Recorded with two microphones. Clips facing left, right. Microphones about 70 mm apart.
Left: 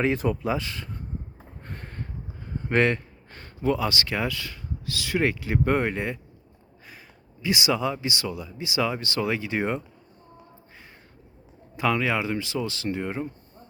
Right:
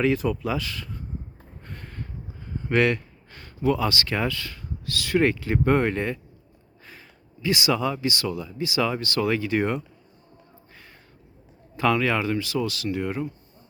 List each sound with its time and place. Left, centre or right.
0.0 s speech: left
1.6 s a sound: left
2.6 s speech: left
7.4 s speech: centre
11.8 s speech: centre